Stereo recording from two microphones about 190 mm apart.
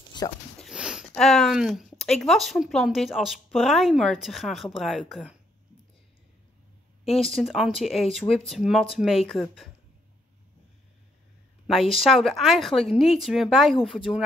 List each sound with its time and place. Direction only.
0.1 s speech: 25° left (ahead or behind)
0.6 s speech: 5° right (ahead or behind)
7.1 s speech: centre (ahead or behind)
11.6 s speech: centre (ahead or behind)